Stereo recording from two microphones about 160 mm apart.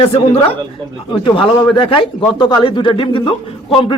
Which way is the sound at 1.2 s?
30° left (ahead or behind).